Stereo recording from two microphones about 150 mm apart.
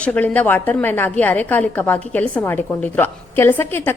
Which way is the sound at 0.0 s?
10° left (ahead or behind).